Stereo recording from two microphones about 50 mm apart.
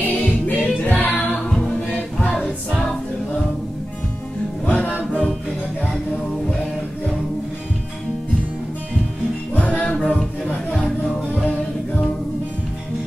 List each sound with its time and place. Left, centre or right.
0.0 s music: left
1.5 s a capella: centre
2.7 s choir: centre
4.6 s music: left
9.6 s music: left
9.8 s music: centre